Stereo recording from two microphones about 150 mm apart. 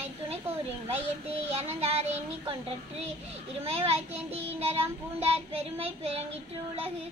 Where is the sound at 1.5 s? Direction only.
45° right (ahead or behind).